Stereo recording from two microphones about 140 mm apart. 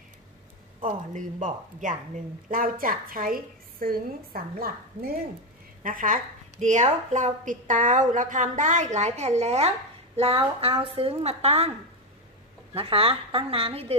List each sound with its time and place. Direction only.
0.8 s a woman's voice: 65° right (ahead or behind); by 5.1 s 90° right
5.8 s a woman's voice: 70° right (ahead or behind); by 11.7 s 45° right (ahead or behind)
12.7 s a woman's voice: 45° right (ahead or behind)